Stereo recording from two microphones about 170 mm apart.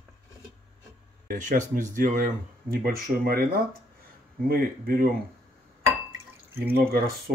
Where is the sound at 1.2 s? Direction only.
50° right (ahead or behind).